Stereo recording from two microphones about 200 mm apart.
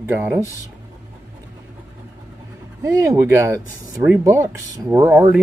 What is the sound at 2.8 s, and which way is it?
Speech, 15° right (ahead or behind).